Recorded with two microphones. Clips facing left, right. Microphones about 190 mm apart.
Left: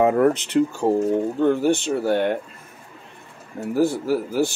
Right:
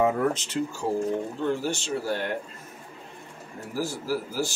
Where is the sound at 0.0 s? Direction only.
65° left (ahead or behind).